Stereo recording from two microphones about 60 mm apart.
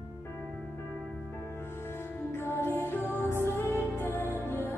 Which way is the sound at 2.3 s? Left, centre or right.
Left.